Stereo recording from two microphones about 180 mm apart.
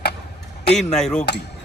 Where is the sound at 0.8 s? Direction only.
5° left (ahead or behind).